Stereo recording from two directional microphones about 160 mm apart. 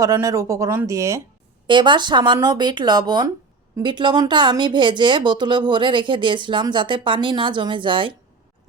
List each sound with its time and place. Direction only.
0.0 s speech: 20° right (ahead or behind)
1.6 s speech: 30° right (ahead or behind)